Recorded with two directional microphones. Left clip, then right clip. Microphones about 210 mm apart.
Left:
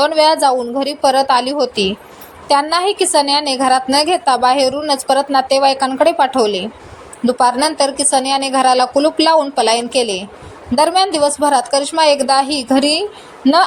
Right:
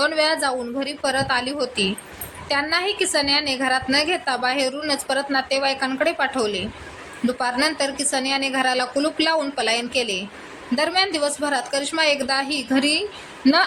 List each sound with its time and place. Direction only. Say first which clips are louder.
0.0 s a woman's voice: left 9 dB; 15° left (ahead or behind)